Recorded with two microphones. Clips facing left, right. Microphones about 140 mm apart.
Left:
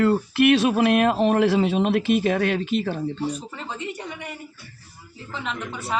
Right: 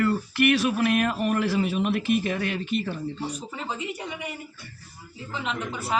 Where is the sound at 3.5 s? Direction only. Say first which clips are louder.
Even; 5° right (ahead or behind).